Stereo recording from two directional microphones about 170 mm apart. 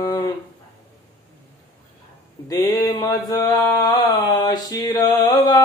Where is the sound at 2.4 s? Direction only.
20° left (ahead or behind).